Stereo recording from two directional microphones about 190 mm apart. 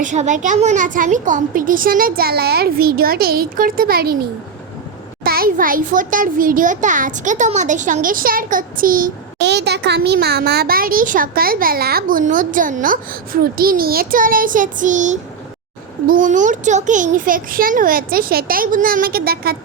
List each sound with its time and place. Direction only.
0.0 s a child's voice: 40° right (ahead or behind)
5.2 s a child's voice: 50° right (ahead or behind)